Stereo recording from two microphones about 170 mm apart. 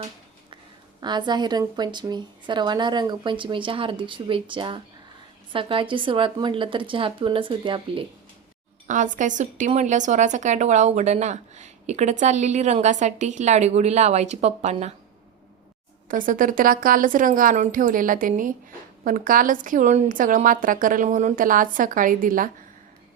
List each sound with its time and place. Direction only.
1.0 s a woman's voice: 25° right (ahead or behind)
8.9 s speech: 45° right (ahead or behind)
16.0 s speech: 50° right (ahead or behind)